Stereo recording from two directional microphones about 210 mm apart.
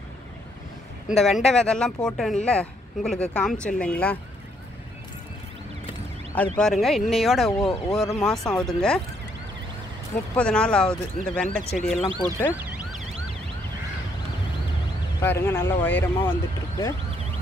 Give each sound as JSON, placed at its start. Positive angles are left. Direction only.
{"t": 1.0, "sound": "speech", "side_deg": 0}
{"t": 6.3, "sound": "speech", "side_deg": 5}
{"t": 10.3, "sound": "speech", "side_deg": 5}
{"t": 12.1, "sound": "speech", "side_deg": -20}
{"t": 12.4, "sound": "emergency vehicle", "side_deg": -5}
{"t": 15.1, "sound": "speech", "side_deg": 10}